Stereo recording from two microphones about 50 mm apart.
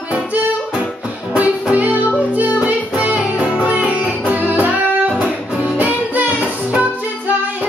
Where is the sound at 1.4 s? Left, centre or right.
Right.